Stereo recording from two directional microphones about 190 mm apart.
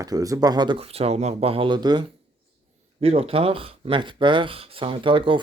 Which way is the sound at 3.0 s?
30° right (ahead or behind).